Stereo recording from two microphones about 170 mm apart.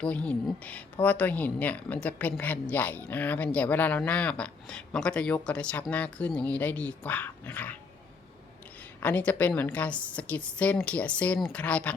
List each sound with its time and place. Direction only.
0.0 s speech: 5° left (ahead or behind)
9.0 s speech: 10° left (ahead or behind)